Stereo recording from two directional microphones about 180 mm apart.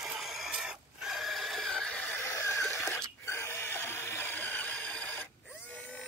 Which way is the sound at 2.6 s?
Centre (ahead or behind).